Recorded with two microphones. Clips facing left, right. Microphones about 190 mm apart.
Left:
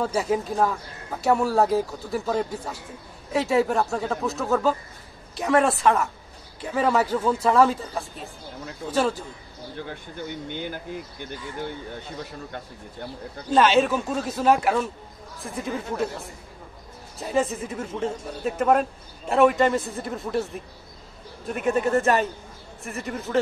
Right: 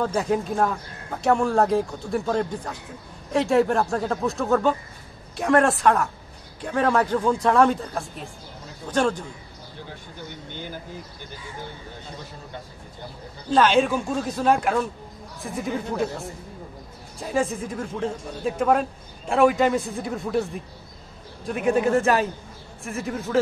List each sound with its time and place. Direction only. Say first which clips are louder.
0.0 s speech: right 1 dB; 5° left (ahead or behind)
10.6 s speech: left 3 dB; 60° left (ahead or behind)
13.5 s speech: even; 5° left (ahead or behind)
17.2 s speech: even; centre (ahead or behind)